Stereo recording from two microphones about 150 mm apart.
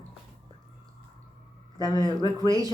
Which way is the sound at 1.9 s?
30° left (ahead or behind).